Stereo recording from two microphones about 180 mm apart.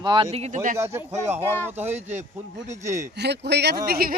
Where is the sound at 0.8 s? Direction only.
15° right (ahead or behind).